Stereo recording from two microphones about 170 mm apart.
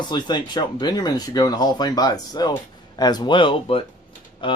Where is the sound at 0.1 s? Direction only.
25° left (ahead or behind).